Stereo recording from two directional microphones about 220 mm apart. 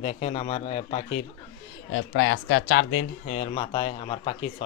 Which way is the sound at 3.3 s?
30° left (ahead or behind).